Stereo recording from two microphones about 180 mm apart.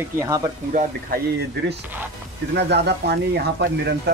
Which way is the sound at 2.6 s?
65° right (ahead or behind).